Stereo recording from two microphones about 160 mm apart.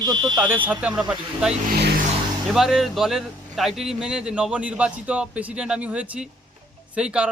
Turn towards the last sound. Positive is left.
turn(degrees=-5)  # may be behind; listen again after turning